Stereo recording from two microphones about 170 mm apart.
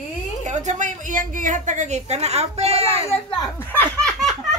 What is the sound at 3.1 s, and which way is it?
Speech, 25° left (ahead or behind).